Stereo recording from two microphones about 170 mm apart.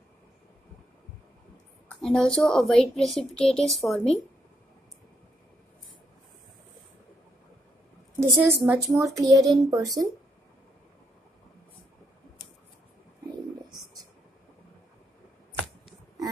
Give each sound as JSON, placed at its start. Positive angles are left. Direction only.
{"t": 1.9, "sound": "a woman's voice", "side_deg": 0}
{"t": 8.2, "sound": "a woman's voice", "side_deg": -15}